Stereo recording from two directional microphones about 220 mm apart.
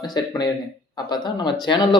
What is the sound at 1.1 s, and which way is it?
Speech, 20° left (ahead or behind).